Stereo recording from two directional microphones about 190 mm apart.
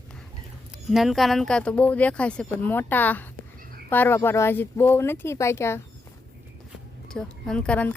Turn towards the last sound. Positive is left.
turn(degrees=5)  # may be behind; listen again after turning